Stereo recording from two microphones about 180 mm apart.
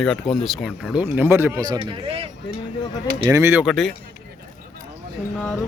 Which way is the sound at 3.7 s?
Centre (ahead or behind).